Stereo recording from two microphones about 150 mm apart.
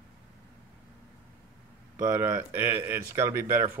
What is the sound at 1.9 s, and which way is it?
A man's voice, 20° right (ahead or behind).